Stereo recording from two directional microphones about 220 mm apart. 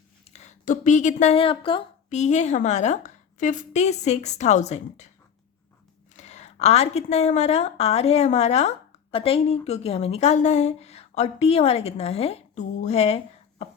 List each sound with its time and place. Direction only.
0.3 s speech: 35° left (ahead or behind)
6.1 s speech: 30° left (ahead or behind)